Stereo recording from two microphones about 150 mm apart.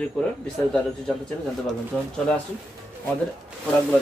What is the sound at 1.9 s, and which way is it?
Speech, 5° left (ahead or behind).